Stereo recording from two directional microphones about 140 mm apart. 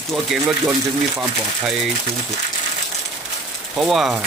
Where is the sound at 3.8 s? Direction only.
Centre (ahead or behind).